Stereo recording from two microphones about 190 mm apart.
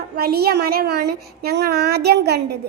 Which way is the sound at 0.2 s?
55° right (ahead or behind).